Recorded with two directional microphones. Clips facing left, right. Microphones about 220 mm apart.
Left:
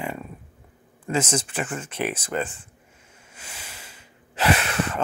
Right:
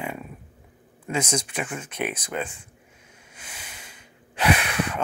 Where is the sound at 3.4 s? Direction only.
10° right (ahead or behind).